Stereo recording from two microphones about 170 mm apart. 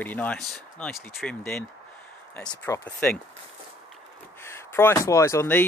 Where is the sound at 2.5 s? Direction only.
25° left (ahead or behind).